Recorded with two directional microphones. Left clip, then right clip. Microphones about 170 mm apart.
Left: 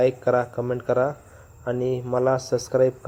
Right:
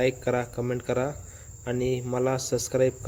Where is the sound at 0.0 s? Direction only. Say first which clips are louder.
Left 5 dB; 15° right (ahead or behind).